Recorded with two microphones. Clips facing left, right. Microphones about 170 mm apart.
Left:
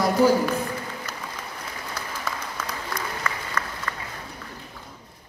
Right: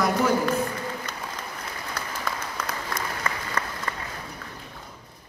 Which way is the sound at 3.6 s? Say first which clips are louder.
Right 1 dB; 30° right (ahead or behind).